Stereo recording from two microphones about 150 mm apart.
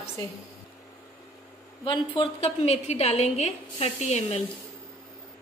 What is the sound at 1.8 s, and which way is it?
A woman's voice, 35° left (ahead or behind).